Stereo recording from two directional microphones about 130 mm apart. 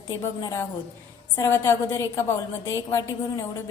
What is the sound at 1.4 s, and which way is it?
A woman's voice, 20° left (ahead or behind).